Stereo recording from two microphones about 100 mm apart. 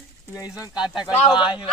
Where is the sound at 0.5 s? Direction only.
40° left (ahead or behind).